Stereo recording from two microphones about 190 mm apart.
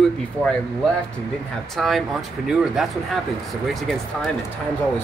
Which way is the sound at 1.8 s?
Centre (ahead or behind).